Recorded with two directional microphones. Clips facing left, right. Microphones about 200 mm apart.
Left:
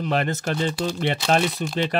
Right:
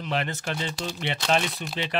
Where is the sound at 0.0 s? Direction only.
45° left (ahead or behind).